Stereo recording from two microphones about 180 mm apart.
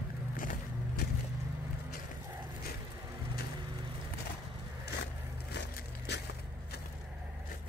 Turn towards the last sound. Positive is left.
turn(degrees=70)  # may be behind; listen again after turning